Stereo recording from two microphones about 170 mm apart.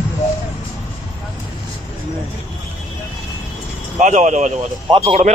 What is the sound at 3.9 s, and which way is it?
Speech, 45° right (ahead or behind).